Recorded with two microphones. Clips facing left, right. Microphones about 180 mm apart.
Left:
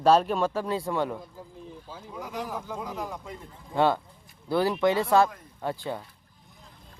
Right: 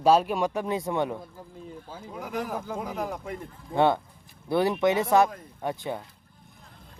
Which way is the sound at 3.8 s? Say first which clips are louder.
Right 1 dB; 20° right (ahead or behind).